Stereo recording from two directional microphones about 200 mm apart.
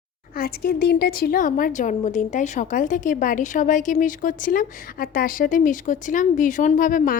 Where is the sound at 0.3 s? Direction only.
50° left (ahead or behind).